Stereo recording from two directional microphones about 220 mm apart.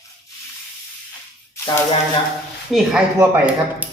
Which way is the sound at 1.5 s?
15° left (ahead or behind).